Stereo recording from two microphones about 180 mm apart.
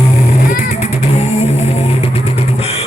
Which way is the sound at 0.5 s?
40° left (ahead or behind).